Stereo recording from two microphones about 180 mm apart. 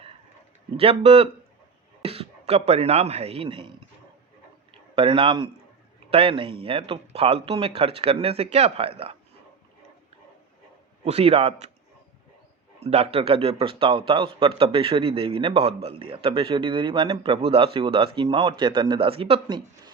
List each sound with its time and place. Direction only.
0.8 s speech: 35° right (ahead or behind)
4.9 s a man's voice: 30° right (ahead or behind)
11.0 s speech: 35° right (ahead or behind)
12.8 s a man's voice: 35° right (ahead or behind)